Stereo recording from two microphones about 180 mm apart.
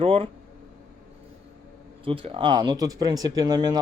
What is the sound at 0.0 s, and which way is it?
Speech, 30° right (ahead or behind).